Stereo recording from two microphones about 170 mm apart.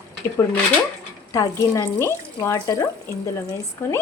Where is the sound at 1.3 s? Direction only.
20° left (ahead or behind).